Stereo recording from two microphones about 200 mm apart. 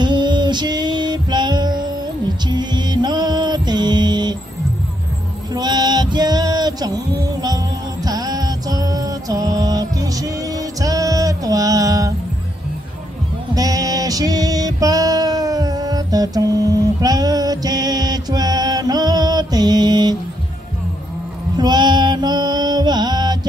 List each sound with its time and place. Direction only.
0.0 s music: 20° right (ahead or behind)
5.5 s music: 20° right (ahead or behind)
13.6 s music: 20° right (ahead or behind)
21.5 s mantra: 20° right (ahead or behind)